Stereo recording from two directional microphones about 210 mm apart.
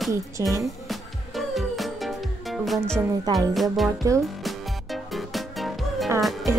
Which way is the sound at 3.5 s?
Centre (ahead or behind).